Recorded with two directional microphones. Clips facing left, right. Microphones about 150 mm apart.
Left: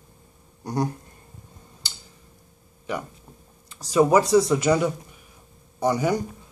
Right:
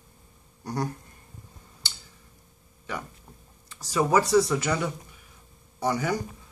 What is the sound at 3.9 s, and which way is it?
Speech, 20° left (ahead or behind).